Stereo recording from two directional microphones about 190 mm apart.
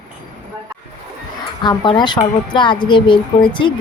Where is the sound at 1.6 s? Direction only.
25° left (ahead or behind).